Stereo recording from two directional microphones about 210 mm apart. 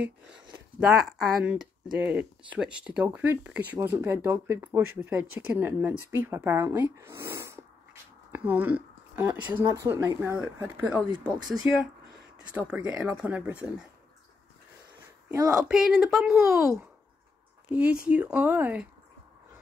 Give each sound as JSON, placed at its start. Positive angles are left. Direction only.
{"t": 0.0, "sound": "speech", "side_deg": -5}
{"t": 11.1, "sound": "speech", "side_deg": -20}
{"t": 12.5, "sound": "speech", "side_deg": -5}
{"t": 15.2, "sound": "speech", "side_deg": -15}
{"t": 15.7, "sound": "speech", "side_deg": -5}